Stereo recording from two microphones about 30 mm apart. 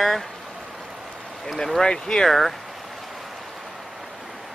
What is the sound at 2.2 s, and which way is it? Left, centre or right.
Speech, centre.